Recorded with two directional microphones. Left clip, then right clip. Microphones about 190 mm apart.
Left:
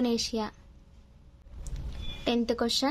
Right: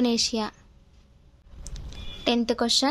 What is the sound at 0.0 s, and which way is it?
Speech, 15° right (ahead or behind).